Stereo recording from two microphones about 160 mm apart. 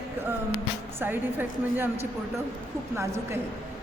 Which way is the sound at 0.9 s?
10° right (ahead or behind).